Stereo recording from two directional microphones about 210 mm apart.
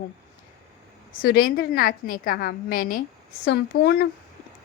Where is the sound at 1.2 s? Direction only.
45° left (ahead or behind).